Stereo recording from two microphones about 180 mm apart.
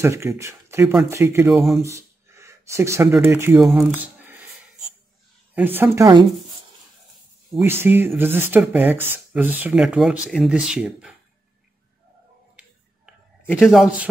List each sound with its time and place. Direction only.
0.0 s speech: 15° right (ahead or behind)
1.5 s speech: centre (ahead or behind)
1.8 s speech: 15° right (ahead or behind)
3.5 s speech: centre (ahead or behind)
5.5 s speech: 10° right (ahead or behind)
7.6 s speech: 15° right (ahead or behind)
12.5 s a sound: 5° right (ahead or behind)